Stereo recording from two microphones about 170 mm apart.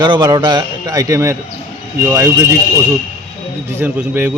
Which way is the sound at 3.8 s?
10° right (ahead or behind).